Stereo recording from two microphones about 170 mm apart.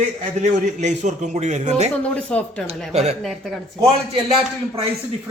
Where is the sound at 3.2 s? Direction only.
Centre (ahead or behind).